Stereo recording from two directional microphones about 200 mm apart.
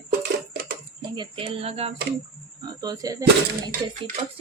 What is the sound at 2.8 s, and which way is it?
Speech, 20° right (ahead or behind).